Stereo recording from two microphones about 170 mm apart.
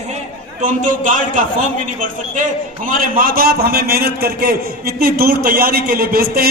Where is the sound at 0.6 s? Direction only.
50° right (ahead or behind).